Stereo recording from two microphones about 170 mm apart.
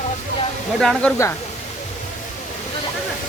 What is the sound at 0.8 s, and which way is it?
Speech, 5° left (ahead or behind).